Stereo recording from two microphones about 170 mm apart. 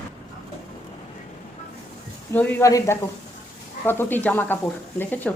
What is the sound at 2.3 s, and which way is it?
A woman's voice, 10° left (ahead or behind).